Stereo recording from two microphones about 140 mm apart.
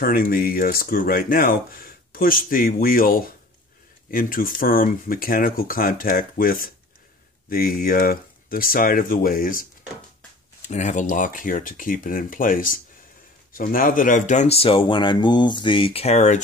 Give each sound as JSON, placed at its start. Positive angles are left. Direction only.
{"t": 0.0, "sound": "speech", "side_deg": 90}
{"t": 10.7, "sound": "speech", "side_deg": 60}